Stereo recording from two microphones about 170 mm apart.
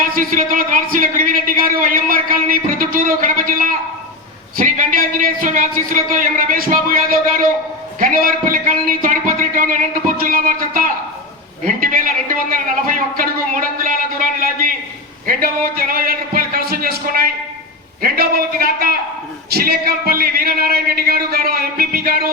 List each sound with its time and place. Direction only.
0.0 s a man's voice: 55° right (ahead or behind)